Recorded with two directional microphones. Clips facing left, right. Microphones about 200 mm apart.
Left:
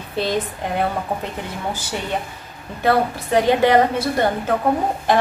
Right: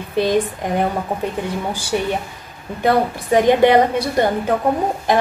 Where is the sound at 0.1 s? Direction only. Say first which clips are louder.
Right 5 dB; 15° right (ahead or behind).